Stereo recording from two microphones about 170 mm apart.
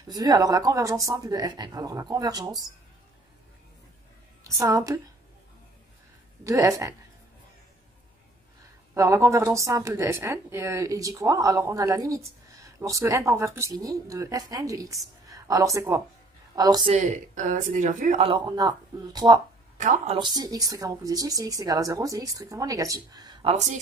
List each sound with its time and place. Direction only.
0.1 s a woman's voice: 20° right (ahead or behind)
4.4 s a woman's voice: 15° right (ahead or behind)
6.4 s a woman's voice: 20° right (ahead or behind)
8.9 s a woman's voice: 20° right (ahead or behind)
16.9 s speech: 45° right (ahead or behind)
18.2 s a woman's voice: 25° right (ahead or behind)
19.8 s speech: 50° right (ahead or behind)
20.2 s a woman's voice: 25° right (ahead or behind)
23.5 s speech: 45° right (ahead or behind)